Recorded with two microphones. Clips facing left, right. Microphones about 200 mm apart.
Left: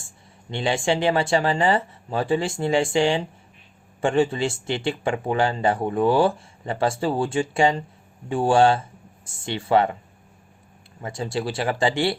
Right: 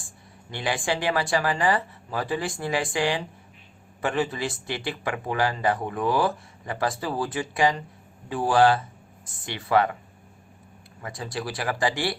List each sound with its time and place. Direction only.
0.5 s speech: 25° left (ahead or behind)
11.0 s speech: 25° left (ahead or behind)